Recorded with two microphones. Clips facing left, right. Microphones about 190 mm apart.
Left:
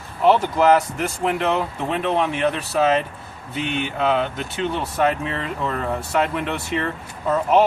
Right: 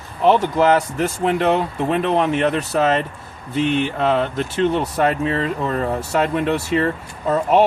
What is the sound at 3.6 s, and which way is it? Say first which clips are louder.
Speech: right 2 dB; 35° right (ahead or behind).